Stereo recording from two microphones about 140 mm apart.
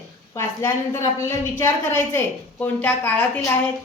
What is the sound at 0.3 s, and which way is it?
A woman's voice, 20° left (ahead or behind).